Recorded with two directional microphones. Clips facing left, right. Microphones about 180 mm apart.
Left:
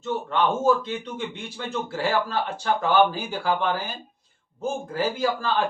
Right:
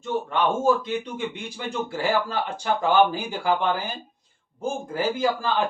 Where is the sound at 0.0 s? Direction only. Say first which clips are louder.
Even; 15° right (ahead or behind).